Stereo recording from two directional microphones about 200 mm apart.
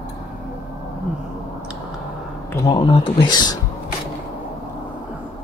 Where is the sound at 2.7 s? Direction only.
20° left (ahead or behind).